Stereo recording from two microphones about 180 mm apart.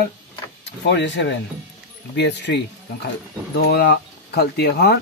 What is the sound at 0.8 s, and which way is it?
A man's voice, 75° left (ahead or behind).